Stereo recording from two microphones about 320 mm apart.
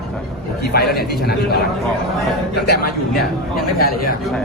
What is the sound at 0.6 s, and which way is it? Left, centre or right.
Speech, left.